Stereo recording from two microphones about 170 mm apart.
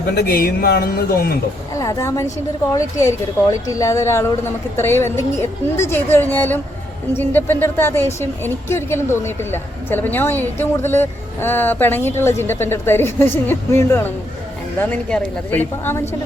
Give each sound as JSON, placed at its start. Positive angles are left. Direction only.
{"t": 0.2, "sound": "speech", "side_deg": 65}
{"t": 1.7, "sound": "a woman's voice", "side_deg": 20}